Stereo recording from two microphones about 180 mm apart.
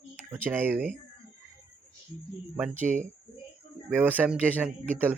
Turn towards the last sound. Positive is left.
turn(degrees=-10)  # may be behind; listen again after turning